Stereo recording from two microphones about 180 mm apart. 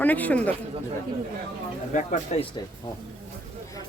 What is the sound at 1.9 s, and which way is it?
Speech, 40° left (ahead or behind).